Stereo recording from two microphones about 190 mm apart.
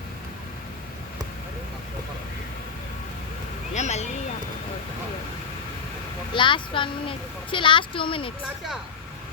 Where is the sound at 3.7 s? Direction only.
35° left (ahead or behind).